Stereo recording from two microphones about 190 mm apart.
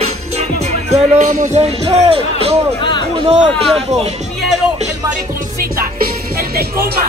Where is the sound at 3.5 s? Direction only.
Centre (ahead or behind).